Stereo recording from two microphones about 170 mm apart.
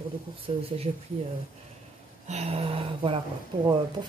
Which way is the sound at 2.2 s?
40° right (ahead or behind).